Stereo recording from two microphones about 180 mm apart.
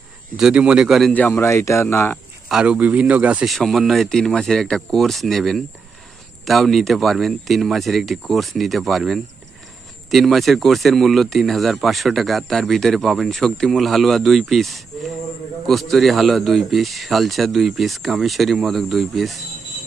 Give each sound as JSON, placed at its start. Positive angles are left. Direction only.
{"t": 0.3, "sound": "a man's voice", "side_deg": -5}
{"t": 2.5, "sound": "speech", "side_deg": -5}